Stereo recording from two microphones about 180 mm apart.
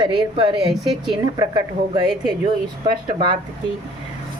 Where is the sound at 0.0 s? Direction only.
25° right (ahead or behind).